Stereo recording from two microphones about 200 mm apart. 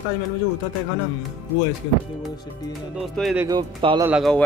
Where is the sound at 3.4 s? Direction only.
20° right (ahead or behind).